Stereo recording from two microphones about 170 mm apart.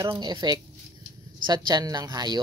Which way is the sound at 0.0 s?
20° right (ahead or behind).